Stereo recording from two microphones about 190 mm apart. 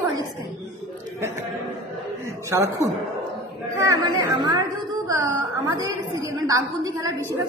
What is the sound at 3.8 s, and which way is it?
Speech, 15° right (ahead or behind).